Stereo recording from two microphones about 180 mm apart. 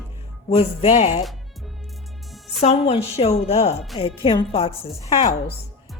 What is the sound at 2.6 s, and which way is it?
A woman's voice, 35° left (ahead or behind).